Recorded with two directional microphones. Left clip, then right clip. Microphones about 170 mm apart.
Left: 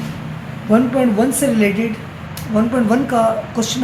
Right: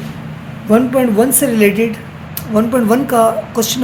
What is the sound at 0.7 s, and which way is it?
A woman's voice, 55° right (ahead or behind).